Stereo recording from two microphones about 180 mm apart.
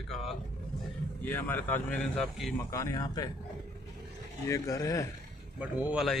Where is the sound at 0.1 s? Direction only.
Centre (ahead or behind).